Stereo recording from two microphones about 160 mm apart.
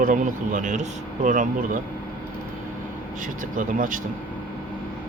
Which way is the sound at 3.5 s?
55° right (ahead or behind).